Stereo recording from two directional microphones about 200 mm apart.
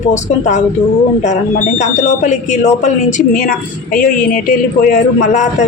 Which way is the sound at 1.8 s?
35° left (ahead or behind).